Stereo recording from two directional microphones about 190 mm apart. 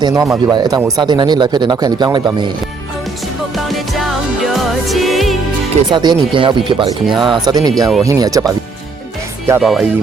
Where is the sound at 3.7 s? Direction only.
Centre (ahead or behind).